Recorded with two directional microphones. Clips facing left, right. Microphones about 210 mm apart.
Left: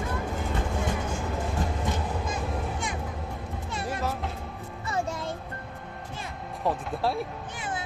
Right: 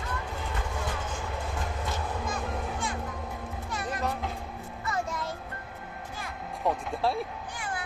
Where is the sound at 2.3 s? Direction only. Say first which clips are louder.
Left 2 dB; 20° left (ahead or behind).